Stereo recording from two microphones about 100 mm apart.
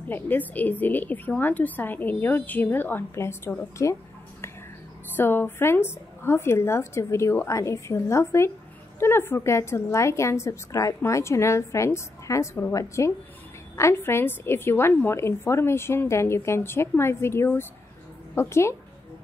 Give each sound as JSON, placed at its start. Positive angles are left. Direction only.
{"t": 0.1, "sound": "a woman's voice", "side_deg": 20}
{"t": 5.1, "sound": "a woman's voice", "side_deg": 20}